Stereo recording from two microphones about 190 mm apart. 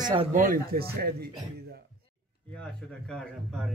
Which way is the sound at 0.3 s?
45° right (ahead or behind).